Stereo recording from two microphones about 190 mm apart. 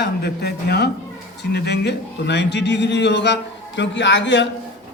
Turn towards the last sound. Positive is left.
turn(degrees=70)  # may be behind; listen again after turning